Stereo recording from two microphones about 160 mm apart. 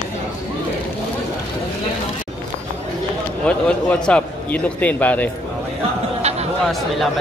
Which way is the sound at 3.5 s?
5° left (ahead or behind).